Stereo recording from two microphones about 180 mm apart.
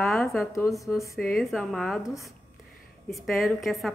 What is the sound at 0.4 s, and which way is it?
Speech, 15° left (ahead or behind).